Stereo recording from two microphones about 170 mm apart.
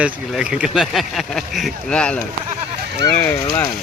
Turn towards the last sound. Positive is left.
turn(degrees=20)  # may be behind; listen again after turning